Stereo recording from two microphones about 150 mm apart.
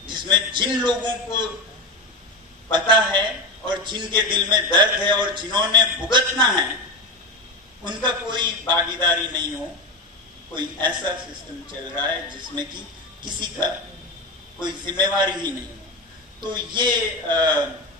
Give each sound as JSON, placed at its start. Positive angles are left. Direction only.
{"t": 0.0, "sound": "a man's voice", "side_deg": -30}
{"t": 2.7, "sound": "a man's voice", "side_deg": -30}
{"t": 7.8, "sound": "a man's voice", "side_deg": -30}
{"t": 10.5, "sound": "a man's voice", "side_deg": -30}
{"t": 12.0, "sound": "a man's voice", "side_deg": -30}